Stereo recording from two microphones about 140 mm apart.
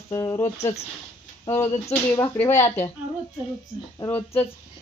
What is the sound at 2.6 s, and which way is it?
Speech, 50° left (ahead or behind).